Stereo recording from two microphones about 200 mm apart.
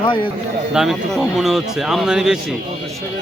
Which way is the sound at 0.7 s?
Centre (ahead or behind).